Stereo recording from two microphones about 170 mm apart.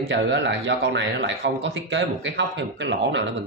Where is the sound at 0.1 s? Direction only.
90° right.